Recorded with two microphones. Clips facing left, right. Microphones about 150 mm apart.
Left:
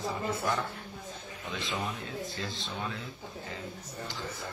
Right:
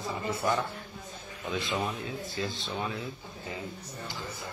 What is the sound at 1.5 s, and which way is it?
Speech, centre (ahead or behind).